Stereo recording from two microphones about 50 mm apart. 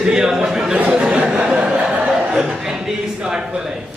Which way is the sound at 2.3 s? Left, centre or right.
Centre.